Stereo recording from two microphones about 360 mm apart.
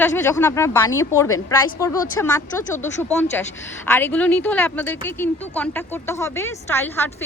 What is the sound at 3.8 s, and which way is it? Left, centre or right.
A woman's voice, centre.